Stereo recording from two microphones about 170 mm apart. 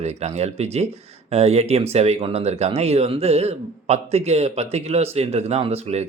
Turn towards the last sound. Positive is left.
turn(degrees=-35)  # may be behind; listen again after turning